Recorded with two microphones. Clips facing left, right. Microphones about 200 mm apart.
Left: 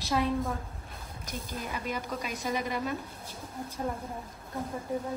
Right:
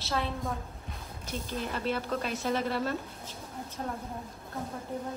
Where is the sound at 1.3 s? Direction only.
10° left (ahead or behind).